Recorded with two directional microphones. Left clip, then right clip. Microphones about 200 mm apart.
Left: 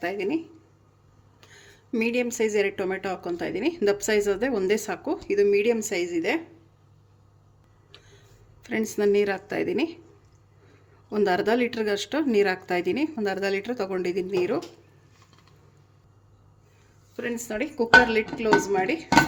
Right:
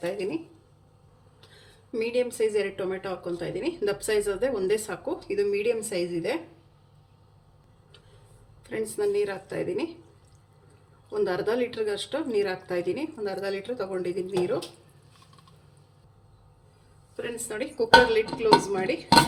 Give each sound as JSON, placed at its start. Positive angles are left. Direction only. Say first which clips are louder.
{"t": 0.0, "sound": "speech", "louder": "left 2 dB", "side_deg": 50}
{"t": 1.9, "sound": "speech", "louder": "left 1 dB", "side_deg": 50}
{"t": 8.6, "sound": "speech", "louder": "left 4 dB", "side_deg": 50}
{"t": 11.1, "sound": "speech", "louder": "left 4 dB", "side_deg": 50}
{"t": 17.2, "sound": "speech", "louder": "left 3 dB", "side_deg": 45}